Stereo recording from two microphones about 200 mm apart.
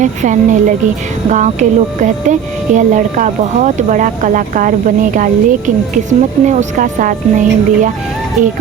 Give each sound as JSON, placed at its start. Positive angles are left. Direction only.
{"t": 0.0, "sound": "speech", "side_deg": -40}